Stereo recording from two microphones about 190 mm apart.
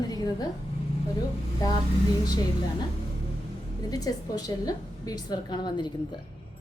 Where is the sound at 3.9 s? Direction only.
20° left (ahead or behind).